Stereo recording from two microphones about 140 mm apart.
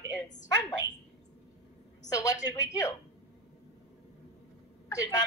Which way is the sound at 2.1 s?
25° left (ahead or behind).